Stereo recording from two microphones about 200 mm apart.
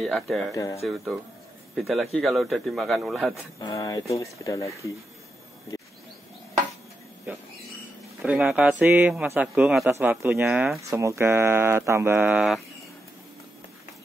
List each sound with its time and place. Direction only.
0.0 s a man's voice: centre (ahead or behind)
0.5 s speech: 15° left (ahead or behind)
0.8 s a man's voice: centre (ahead or behind)
3.5 s speech: 20° left (ahead or behind)
8.2 s speech: 5° right (ahead or behind)